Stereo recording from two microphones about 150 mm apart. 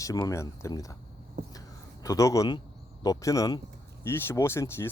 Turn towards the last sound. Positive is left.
turn(degrees=15)  # may be behind; listen again after turning